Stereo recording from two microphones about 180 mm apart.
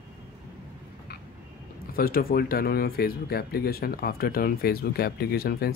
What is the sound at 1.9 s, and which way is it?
Speech, 55° left (ahead or behind).